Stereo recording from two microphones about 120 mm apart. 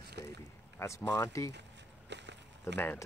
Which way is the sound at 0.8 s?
25° left (ahead or behind).